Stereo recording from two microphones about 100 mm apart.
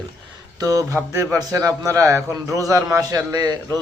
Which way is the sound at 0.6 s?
35° right (ahead or behind).